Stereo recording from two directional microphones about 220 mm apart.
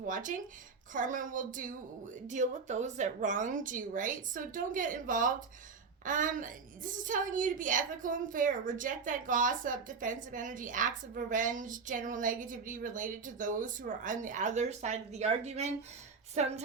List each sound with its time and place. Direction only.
0.0 s a woman's voice: 35° right (ahead or behind)